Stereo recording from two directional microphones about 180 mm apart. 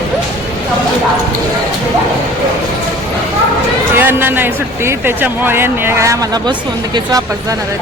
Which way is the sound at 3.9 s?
10° right (ahead or behind).